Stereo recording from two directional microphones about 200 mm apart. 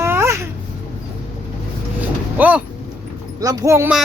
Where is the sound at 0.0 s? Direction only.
15° right (ahead or behind).